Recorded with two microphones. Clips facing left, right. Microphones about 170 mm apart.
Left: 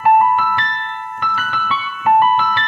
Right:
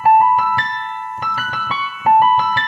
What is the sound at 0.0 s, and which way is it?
Keyboard, 35° right (ahead or behind).